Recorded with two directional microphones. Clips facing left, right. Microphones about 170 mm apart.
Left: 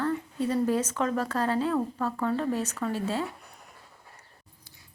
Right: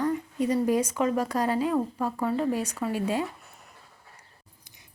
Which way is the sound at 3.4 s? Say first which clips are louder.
Left 1 dB; centre (ahead or behind).